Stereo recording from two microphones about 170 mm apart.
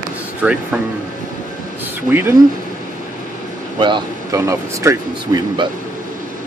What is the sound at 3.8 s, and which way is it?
Speech, 25° right (ahead or behind).